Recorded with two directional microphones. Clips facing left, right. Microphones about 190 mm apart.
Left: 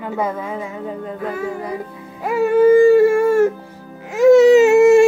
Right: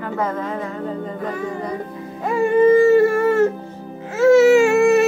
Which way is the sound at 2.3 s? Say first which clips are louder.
Left 1 dB; 5° left (ahead or behind).